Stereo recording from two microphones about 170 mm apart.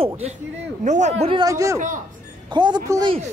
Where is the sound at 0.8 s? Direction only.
45° right (ahead or behind).